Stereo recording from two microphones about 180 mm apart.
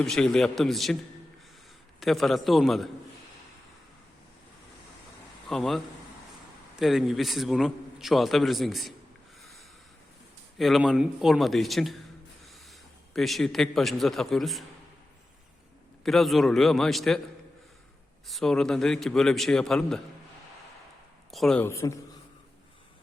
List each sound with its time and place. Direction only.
0.0 s a man's voice: 5° left (ahead or behind)
2.0 s a man's voice: centre (ahead or behind)
5.5 s a man's voice: centre (ahead or behind)
10.6 s a man's voice: centre (ahead or behind)
16.0 s a man's voice: centre (ahead or behind)
18.3 s a man's voice: centre (ahead or behind)
21.2 s speech: centre (ahead or behind)
21.7 s a man's voice: 15° left (ahead or behind)